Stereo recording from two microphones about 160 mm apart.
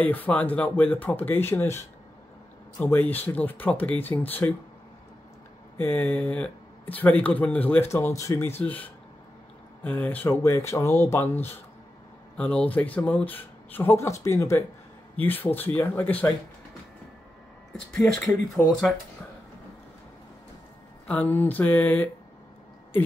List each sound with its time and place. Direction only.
0.0 s speech: 10° left (ahead or behind)
5.8 s speech: 10° left (ahead or behind)
17.9 s speech: centre (ahead or behind)
21.1 s speech: 10° left (ahead or behind)